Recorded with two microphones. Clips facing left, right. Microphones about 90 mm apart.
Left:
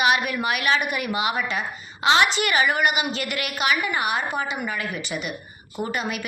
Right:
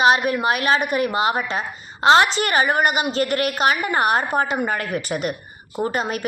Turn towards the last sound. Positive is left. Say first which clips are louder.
# right 4 dB
turn(degrees=-35)  # may be behind; listen again after turning